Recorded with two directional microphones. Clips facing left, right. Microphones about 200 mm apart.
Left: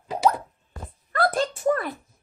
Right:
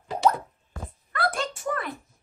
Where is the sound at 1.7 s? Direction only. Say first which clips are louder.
Left 8 dB; 40° left (ahead or behind).